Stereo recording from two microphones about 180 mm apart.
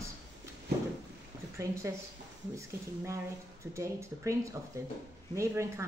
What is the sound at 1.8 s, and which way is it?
Speech, 15° right (ahead or behind).